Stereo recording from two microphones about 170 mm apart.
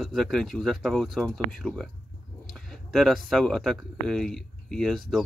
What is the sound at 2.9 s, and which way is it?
Speech, centre (ahead or behind).